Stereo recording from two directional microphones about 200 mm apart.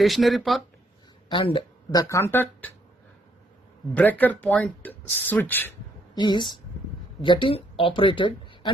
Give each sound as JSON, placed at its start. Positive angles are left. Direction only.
{"t": 0.0, "sound": "speech", "side_deg": 0}
{"t": 1.3, "sound": "speech", "side_deg": 25}
{"t": 3.9, "sound": "speech", "side_deg": 10}
{"t": 6.1, "sound": "a woman's voice", "side_deg": 20}